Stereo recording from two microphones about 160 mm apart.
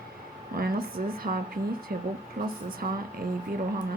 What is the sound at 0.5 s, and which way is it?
Speech, 65° right (ahead or behind).